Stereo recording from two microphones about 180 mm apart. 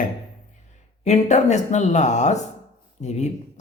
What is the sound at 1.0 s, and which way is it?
Speech, 40° left (ahead or behind).